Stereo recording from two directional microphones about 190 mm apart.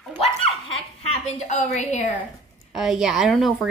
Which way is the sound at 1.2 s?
35° left (ahead or behind).